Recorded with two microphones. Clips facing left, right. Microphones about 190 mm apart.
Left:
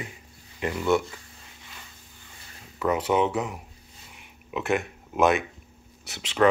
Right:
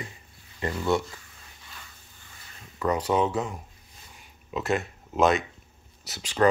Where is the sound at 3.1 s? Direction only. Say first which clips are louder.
Left 1 dB; 15° left (ahead or behind).